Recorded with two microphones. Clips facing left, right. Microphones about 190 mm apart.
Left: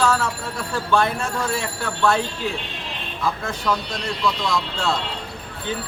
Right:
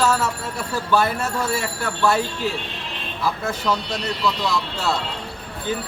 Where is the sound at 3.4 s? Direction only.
5° right (ahead or behind).